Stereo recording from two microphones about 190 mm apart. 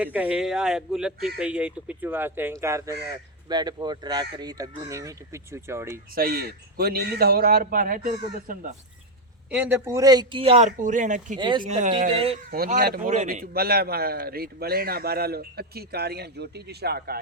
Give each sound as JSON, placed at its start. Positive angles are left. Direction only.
{"t": 0.0, "sound": "a man's voice", "side_deg": -10}
{"t": 6.1, "sound": "a man's voice", "side_deg": -55}
{"t": 9.5, "sound": "speech", "side_deg": -10}
{"t": 10.7, "sound": "speech", "side_deg": -40}
{"t": 11.3, "sound": "speech", "side_deg": -25}
{"t": 11.6, "sound": "speech", "side_deg": -40}
{"t": 11.9, "sound": "speech", "side_deg": -30}
{"t": 12.5, "sound": "a man's voice", "side_deg": -50}